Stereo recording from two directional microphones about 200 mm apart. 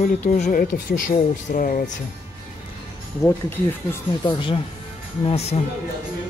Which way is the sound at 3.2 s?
10° left (ahead or behind).